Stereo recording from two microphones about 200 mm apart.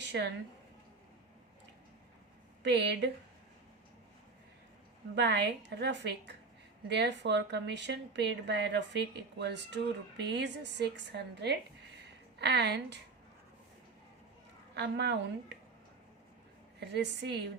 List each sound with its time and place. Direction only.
0.1 s a woman's voice: 55° right (ahead or behind)
2.6 s speech: 55° right (ahead or behind)
5.1 s speech: 60° right (ahead or behind)
14.8 s speech: 55° right (ahead or behind)
16.8 s speech: 60° right (ahead or behind)